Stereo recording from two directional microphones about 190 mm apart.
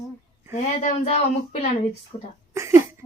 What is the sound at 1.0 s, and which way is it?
Speech, 35° left (ahead or behind).